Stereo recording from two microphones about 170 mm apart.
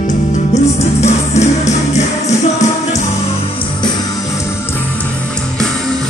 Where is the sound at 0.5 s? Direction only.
40° left (ahead or behind).